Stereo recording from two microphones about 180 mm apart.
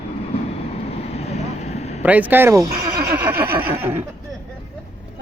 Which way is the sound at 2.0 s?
10° right (ahead or behind).